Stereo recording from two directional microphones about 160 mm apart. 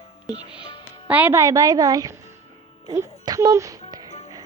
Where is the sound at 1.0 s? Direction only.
10° right (ahead or behind).